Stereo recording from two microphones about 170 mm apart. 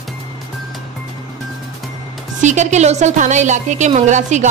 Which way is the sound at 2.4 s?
45° right (ahead or behind).